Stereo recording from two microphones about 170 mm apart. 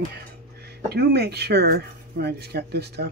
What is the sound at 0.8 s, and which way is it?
Speech, 70° right (ahead or behind).